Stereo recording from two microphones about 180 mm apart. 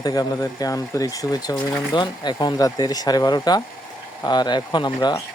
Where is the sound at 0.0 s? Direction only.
20° left (ahead or behind).